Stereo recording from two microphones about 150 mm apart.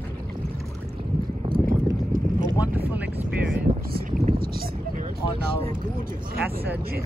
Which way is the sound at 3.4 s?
65° right (ahead or behind).